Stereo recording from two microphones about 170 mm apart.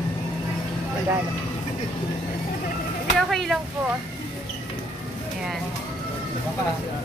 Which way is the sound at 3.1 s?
Centre (ahead or behind).